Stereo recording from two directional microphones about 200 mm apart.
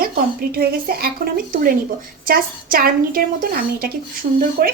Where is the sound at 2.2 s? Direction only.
45° right (ahead or behind).